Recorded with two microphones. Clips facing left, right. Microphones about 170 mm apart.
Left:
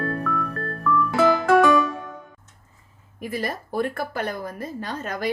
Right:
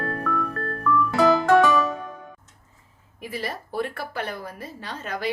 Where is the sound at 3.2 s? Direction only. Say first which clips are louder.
Left 3 dB; 45° left (ahead or behind).